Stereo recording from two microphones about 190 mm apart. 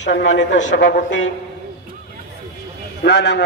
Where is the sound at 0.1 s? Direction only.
75° left (ahead or behind).